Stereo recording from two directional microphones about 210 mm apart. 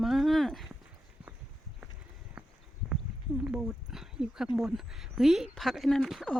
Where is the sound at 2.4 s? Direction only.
5° right (ahead or behind).